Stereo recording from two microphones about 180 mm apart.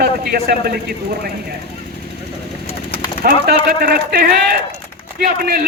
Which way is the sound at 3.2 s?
55° right (ahead or behind).